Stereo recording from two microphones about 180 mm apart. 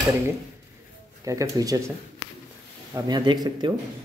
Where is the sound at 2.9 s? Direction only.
25° right (ahead or behind).